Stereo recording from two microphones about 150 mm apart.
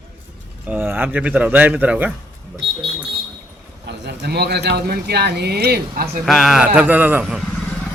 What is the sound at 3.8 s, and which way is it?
Speech, 90° right.